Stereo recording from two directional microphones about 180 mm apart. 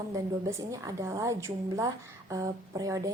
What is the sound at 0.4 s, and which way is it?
A woman's voice, 15° right (ahead or behind).